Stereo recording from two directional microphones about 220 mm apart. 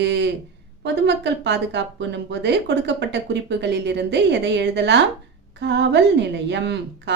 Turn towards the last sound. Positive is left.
turn(degrees=-55)  # may be behind; listen again after turning